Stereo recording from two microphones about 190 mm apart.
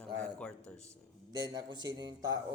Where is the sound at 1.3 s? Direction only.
20° right (ahead or behind).